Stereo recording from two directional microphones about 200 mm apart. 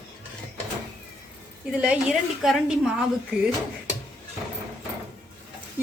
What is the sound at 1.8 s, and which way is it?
A woman's voice, 5° right (ahead or behind).